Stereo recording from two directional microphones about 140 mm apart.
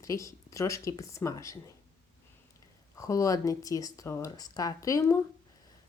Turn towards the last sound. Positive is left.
turn(degrees=25)  # may be behind; listen again after turning